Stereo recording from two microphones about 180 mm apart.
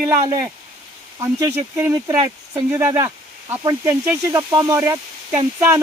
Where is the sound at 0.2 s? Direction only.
20° right (ahead or behind).